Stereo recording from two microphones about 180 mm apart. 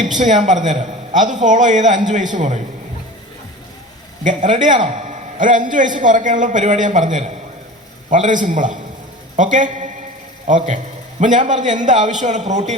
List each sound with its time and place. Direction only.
0.2 s a man's voice: 45° right (ahead or behind)
4.2 s a man's voice: 45° right (ahead or behind)